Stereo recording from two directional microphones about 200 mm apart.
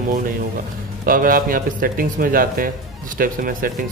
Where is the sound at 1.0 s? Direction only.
45° right (ahead or behind).